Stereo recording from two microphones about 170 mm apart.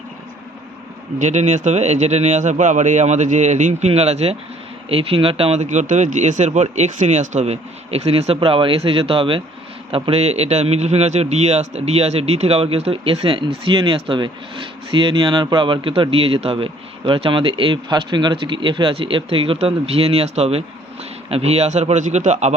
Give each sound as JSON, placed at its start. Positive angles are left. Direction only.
{"t": 1.2, "sound": "a man's voice", "side_deg": -45}